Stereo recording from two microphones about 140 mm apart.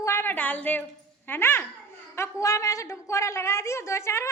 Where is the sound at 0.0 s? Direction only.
20° left (ahead or behind).